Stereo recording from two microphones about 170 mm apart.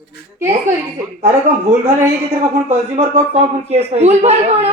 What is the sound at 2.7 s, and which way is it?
A man's voice, 35° right (ahead or behind).